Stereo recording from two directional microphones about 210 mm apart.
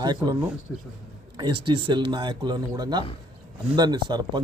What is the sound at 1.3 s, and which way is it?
Speech, 20° right (ahead or behind).